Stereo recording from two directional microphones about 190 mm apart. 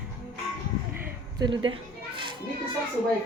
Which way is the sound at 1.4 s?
25° right (ahead or behind).